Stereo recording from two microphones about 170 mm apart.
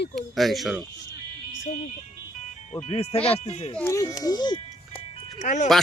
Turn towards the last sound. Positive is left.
turn(degrees=45)  # may be behind; listen again after turning